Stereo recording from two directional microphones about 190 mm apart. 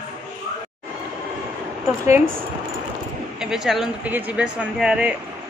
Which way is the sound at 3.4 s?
Centre (ahead or behind).